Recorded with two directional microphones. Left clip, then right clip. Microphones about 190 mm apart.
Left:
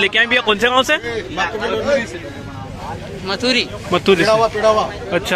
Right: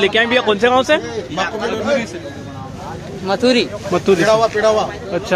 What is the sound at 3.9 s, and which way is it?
Speech, 5° right (ahead or behind).